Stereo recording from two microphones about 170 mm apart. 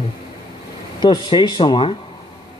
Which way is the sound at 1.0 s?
25° left (ahead or behind).